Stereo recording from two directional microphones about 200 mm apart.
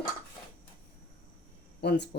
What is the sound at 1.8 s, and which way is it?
Speech, 55° left (ahead or behind).